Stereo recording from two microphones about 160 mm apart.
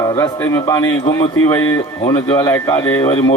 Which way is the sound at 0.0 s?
20° left (ahead or behind).